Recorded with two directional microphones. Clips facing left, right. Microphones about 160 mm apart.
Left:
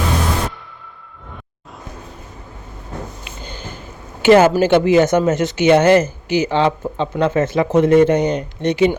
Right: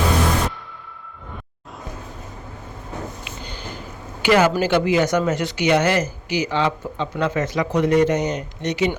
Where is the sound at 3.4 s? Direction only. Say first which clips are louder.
Left 4 dB; 45° left (ahead or behind).